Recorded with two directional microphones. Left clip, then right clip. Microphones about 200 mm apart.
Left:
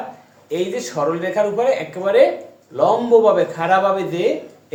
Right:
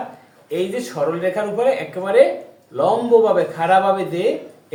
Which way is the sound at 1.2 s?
10° left (ahead or behind).